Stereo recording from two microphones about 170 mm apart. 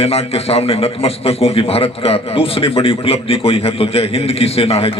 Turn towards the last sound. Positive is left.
turn(degrees=35)  # may be behind; listen again after turning